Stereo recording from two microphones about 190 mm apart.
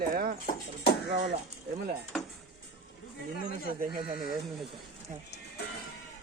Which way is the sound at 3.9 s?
25° right (ahead or behind).